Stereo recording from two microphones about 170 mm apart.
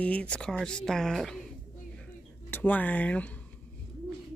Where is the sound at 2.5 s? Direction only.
10° left (ahead or behind).